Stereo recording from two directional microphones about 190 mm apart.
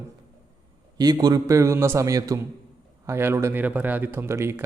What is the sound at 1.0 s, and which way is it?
A man's voice, 20° right (ahead or behind).